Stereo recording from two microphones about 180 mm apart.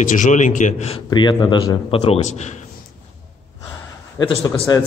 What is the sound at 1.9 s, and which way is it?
Speech, 35° left (ahead or behind).